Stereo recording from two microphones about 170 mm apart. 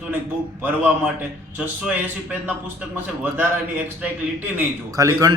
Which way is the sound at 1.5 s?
10° right (ahead or behind).